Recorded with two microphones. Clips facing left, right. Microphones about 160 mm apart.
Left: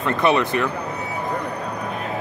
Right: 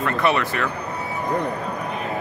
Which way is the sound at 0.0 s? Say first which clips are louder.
Left 2 dB; 20° left (ahead or behind).